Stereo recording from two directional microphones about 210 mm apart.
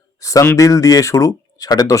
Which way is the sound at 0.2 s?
15° left (ahead or behind).